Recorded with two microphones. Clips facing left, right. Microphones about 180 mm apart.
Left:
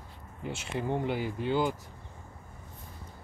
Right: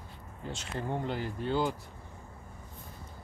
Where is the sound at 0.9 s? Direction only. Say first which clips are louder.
Left 3 dB; 10° left (ahead or behind).